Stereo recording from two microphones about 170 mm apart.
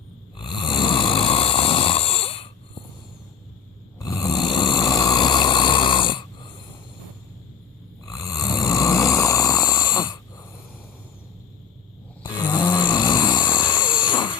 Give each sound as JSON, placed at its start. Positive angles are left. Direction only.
{"t": 0.3, "sound": "snoring", "side_deg": 25}
{"t": 4.0, "sound": "snoring", "side_deg": 20}
{"t": 8.0, "sound": "snoring", "side_deg": 20}
{"t": 12.2, "sound": "snoring", "side_deg": 25}